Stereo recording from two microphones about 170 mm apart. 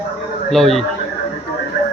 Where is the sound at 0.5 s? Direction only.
Centre (ahead or behind).